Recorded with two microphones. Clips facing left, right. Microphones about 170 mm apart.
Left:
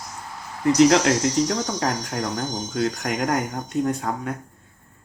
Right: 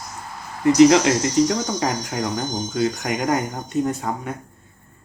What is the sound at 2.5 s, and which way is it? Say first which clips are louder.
Speech: right 3 dB; 50° right (ahead or behind).